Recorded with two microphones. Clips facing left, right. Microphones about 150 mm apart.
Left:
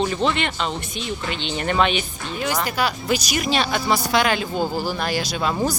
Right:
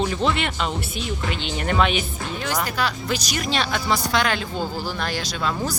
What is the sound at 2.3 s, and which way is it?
Speech, 10° left (ahead or behind).